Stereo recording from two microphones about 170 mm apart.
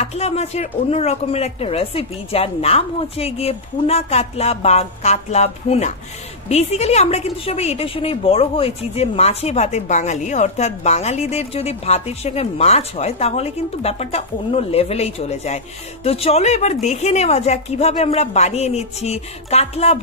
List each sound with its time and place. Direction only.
0.0 s a woman's voice: 40° left (ahead or behind)